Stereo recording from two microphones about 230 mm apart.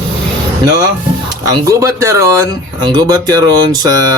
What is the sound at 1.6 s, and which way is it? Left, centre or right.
Speech, centre.